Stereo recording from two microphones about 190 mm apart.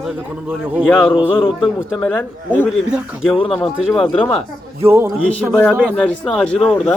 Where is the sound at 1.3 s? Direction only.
25° left (ahead or behind).